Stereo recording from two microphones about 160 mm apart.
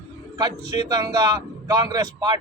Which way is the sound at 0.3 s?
25° right (ahead or behind).